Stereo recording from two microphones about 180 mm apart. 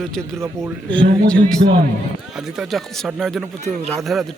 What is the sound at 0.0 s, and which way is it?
Speech, 5° left (ahead or behind).